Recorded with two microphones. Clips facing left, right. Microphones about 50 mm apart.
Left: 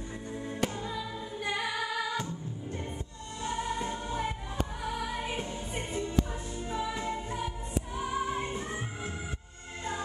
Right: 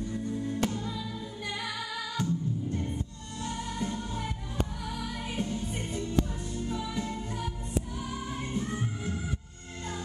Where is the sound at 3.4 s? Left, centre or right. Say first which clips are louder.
Left 2 dB; left.